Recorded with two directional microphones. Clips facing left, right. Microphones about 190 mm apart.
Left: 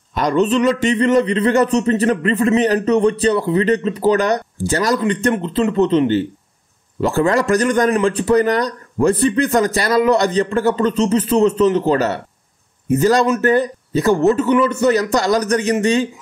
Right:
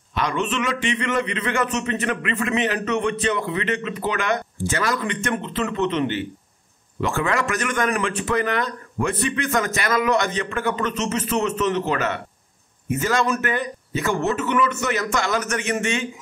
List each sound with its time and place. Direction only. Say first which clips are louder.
0.1 s a man's voice: left 8 dB; 40° left (ahead or behind)